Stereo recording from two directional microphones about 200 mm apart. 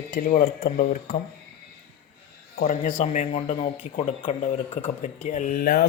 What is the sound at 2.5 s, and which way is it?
Speech, 40° left (ahead or behind).